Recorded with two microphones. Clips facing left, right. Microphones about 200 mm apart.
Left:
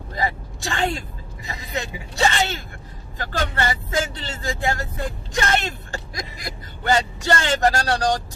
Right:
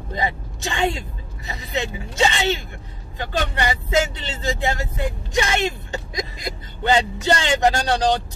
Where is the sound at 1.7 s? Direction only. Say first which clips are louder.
Right 4 dB; 20° right (ahead or behind).